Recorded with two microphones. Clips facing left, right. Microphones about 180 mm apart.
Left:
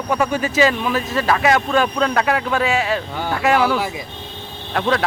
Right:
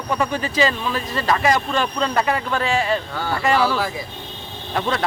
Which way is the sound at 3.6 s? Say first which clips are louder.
Left 2 dB; 15° left (ahead or behind).